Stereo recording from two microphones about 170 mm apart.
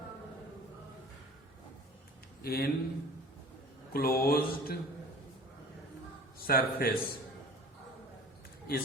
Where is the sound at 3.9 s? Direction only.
60° left (ahead or behind).